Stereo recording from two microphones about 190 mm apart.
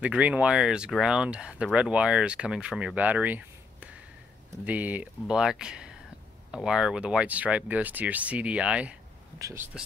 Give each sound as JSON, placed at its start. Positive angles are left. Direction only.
{"t": 0.0, "sound": "speech", "side_deg": -5}
{"t": 9.4, "sound": "speech", "side_deg": -15}